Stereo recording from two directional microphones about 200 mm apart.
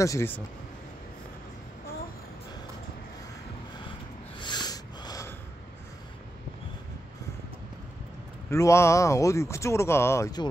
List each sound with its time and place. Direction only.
0.0 s speech: 15° left (ahead or behind)
4.4 s snort: 20° left (ahead or behind)
8.5 s speech: 15° left (ahead or behind)